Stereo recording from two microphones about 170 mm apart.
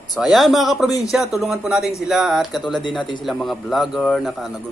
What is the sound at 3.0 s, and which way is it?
Speech, 30° left (ahead or behind).